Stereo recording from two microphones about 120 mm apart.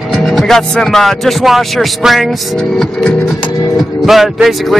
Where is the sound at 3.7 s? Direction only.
Centre (ahead or behind).